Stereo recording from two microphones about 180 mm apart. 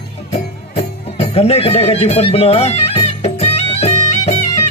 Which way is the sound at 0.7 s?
35° left (ahead or behind).